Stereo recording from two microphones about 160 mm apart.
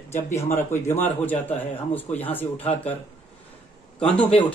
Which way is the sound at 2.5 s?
40° left (ahead or behind).